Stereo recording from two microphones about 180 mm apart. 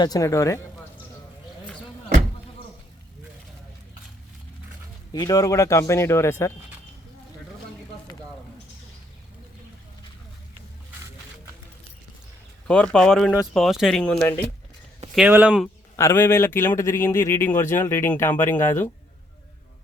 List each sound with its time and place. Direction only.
0.0 s a man's voice: 20° left (ahead or behind)
5.1 s a man's voice: 20° left (ahead or behind)
12.6 s speech: 5° left (ahead or behind)
15.1 s speech: 5° right (ahead or behind)
16.0 s a man's voice: 15° left (ahead or behind)